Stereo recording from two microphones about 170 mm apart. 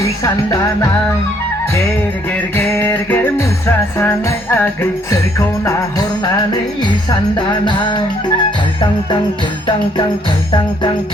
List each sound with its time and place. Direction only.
2.7 s music: 10° left (ahead or behind)
7.3 s music: 25° left (ahead or behind)